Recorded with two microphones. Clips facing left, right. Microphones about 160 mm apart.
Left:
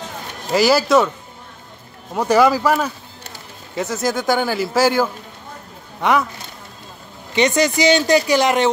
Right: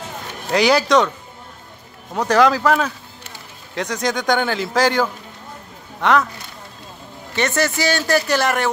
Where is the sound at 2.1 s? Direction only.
10° left (ahead or behind).